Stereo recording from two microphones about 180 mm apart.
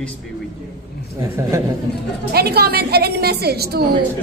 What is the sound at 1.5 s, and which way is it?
Speech, 15° right (ahead or behind).